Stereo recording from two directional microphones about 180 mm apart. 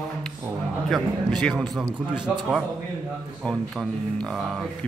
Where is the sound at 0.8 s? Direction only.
Centre (ahead or behind).